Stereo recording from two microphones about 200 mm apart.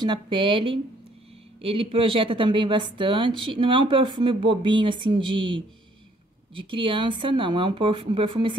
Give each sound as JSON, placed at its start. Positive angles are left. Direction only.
{"t": 0.0, "sound": "speech", "side_deg": -25}